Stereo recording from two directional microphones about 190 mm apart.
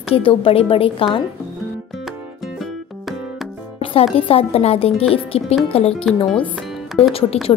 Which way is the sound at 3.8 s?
30° left (ahead or behind).